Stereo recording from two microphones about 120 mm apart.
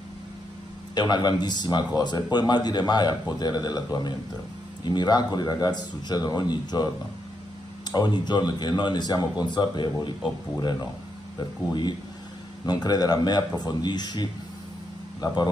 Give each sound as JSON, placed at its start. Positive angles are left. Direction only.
{"t": 0.9, "sound": "speech", "side_deg": 35}
{"t": 7.9, "sound": "speech", "side_deg": 35}
{"t": 11.3, "sound": "speech", "side_deg": 35}